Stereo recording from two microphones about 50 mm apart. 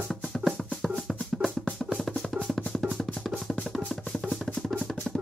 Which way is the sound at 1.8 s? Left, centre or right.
Centre.